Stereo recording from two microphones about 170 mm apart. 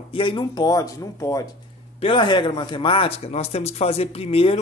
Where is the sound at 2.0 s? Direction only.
30° left (ahead or behind).